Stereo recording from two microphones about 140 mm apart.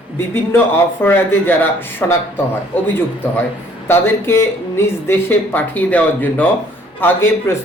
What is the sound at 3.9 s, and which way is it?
Speech, 15° left (ahead or behind).